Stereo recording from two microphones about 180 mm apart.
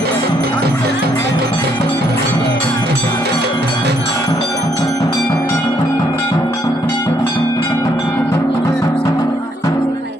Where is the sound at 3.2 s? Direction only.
65° right (ahead or behind).